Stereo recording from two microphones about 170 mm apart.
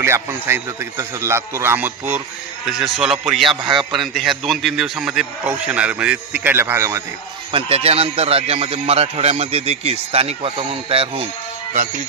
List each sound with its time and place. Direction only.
0.0 s a man's voice: 15° right (ahead or behind)
7.5 s speech: 35° right (ahead or behind)